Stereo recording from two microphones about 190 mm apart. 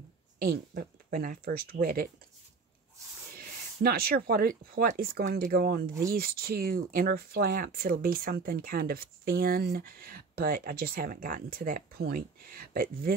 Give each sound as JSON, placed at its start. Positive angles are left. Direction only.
{"t": 0.4, "sound": "speech", "side_deg": -50}
{"t": 3.3, "sound": "speech", "side_deg": -55}